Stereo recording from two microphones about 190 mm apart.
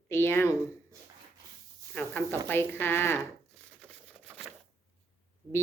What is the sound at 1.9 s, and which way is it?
Speech, 10° left (ahead or behind).